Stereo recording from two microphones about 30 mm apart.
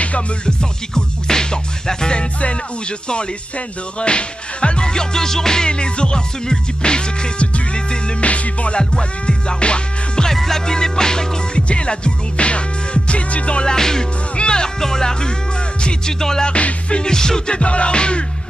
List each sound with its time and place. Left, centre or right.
0.5 s music: left
3.5 s music: left; by 5.7 s centre
5.7 s music: left
8.2 s music: left
9.2 s music: left
10.3 s music: centre
11.5 s music: left
13.7 s music: centre
14.3 s speech: left
14.8 s music: centre
17.5 s music: left